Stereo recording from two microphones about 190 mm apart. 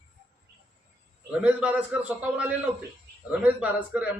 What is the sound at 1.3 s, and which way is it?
A man's voice, 5° right (ahead or behind).